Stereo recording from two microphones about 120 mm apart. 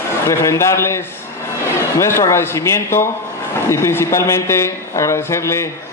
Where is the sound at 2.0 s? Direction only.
25° left (ahead or behind).